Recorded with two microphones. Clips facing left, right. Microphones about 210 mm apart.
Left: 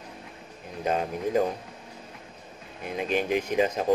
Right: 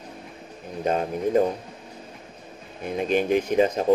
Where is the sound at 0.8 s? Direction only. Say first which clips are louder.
Right 3 dB; 40° right (ahead or behind).